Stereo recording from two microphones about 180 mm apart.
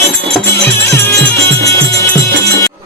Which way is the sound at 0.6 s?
10° left (ahead or behind).